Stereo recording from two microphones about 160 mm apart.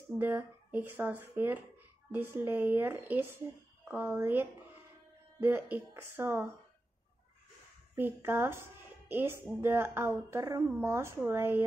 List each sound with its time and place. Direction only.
0.2 s a woman's voice: 15° right (ahead or behind)
7.9 s a woman's voice: 15° right (ahead or behind)